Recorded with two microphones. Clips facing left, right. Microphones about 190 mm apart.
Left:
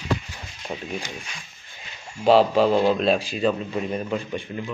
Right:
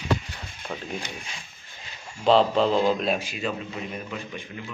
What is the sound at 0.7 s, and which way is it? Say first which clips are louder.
Speech: left 2 dB; 20° left (ahead or behind).